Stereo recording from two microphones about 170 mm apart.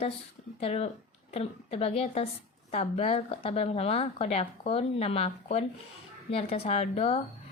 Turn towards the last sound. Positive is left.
turn(degrees=40)  # may be behind; listen again after turning